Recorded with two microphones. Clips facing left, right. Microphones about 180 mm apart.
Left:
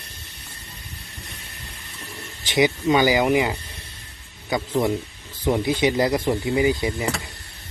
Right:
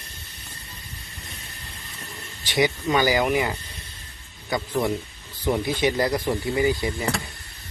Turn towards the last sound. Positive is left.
turn(degrees=20)  # may be behind; listen again after turning